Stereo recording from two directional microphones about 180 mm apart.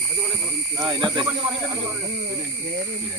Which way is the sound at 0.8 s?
25° right (ahead or behind).